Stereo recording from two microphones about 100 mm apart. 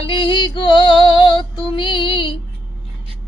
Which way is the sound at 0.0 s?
55° left (ahead or behind).